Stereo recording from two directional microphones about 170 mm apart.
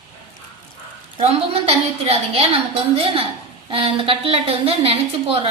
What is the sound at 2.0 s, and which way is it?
Speech, 35° right (ahead or behind).